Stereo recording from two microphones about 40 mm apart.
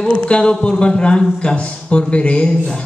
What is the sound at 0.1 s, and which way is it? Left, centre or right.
Speech, left.